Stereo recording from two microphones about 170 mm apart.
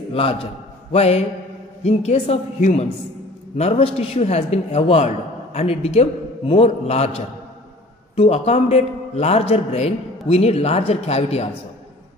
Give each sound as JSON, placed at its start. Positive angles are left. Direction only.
{"t": 0.1, "sound": "a man's voice", "side_deg": 35}